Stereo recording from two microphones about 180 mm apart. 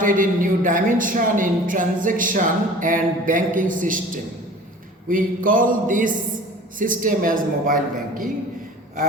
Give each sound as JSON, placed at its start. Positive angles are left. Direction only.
{"t": 0.0, "sound": "speech", "side_deg": -50}